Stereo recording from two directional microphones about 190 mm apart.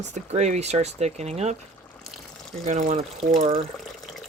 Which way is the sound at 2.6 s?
40° right (ahead or behind).